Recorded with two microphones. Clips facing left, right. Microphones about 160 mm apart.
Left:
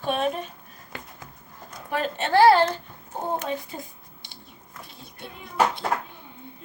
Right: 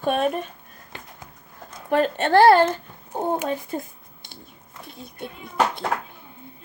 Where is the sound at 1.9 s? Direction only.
50° right (ahead or behind).